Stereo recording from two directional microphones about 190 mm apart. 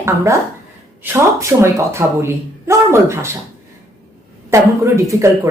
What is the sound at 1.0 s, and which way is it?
A woman's voice, 15° right (ahead or behind).